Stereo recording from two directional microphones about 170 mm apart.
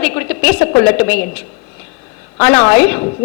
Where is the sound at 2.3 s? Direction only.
15° left (ahead or behind).